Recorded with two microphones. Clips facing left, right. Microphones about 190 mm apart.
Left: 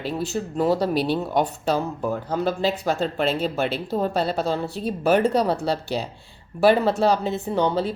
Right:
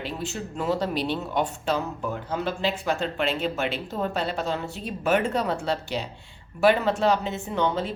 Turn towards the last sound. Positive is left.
turn(degrees=35)  # may be behind; listen again after turning